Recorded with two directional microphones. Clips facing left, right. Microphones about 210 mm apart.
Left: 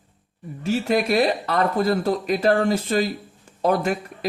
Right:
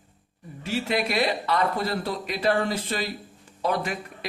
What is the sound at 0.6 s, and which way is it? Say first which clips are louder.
A man's voice: left 6 dB; 45° left (ahead or behind).